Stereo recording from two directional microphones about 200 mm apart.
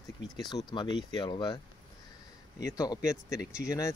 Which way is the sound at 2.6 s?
15° left (ahead or behind).